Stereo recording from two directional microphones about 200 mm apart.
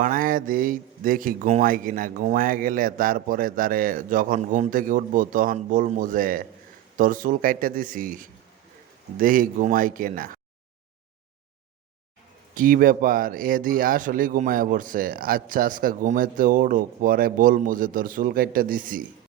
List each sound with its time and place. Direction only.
0.0 s speech: 45° right (ahead or behind)
12.5 s speech: 45° right (ahead or behind)